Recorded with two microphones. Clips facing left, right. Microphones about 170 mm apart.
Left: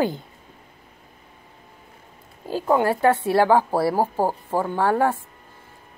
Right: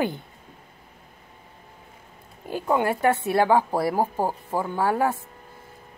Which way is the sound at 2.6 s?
45° left (ahead or behind).